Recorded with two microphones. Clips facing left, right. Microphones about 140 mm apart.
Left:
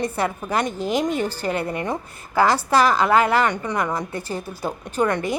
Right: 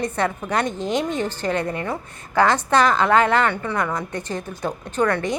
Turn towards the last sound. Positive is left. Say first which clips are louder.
# even
turn(degrees=15)  # may be behind; listen again after turning